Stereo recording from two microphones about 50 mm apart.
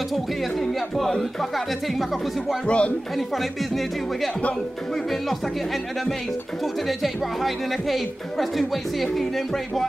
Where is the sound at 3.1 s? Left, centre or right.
Centre.